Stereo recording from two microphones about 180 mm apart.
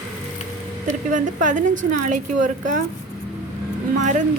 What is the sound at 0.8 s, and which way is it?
A woman's voice, 45° right (ahead or behind).